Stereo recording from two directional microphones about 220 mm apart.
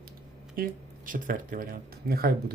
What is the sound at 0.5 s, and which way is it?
Speech, 40° right (ahead or behind).